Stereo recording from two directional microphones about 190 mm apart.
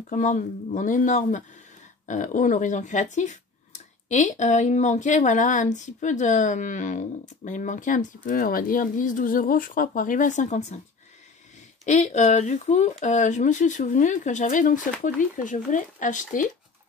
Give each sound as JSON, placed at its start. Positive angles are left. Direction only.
{"t": 0.1, "sound": "speech", "side_deg": 40}
{"t": 11.8, "sound": "speech", "side_deg": 40}